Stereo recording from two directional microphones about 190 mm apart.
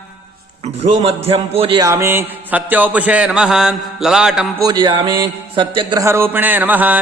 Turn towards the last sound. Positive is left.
turn(degrees=-10)  # may be behind; listen again after turning